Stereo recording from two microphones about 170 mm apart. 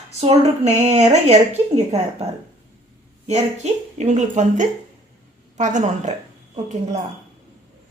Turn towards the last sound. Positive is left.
turn(degrees=-45)  # may be behind; listen again after turning